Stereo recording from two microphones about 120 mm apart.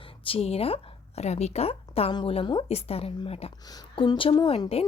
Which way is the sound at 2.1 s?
40° left (ahead or behind).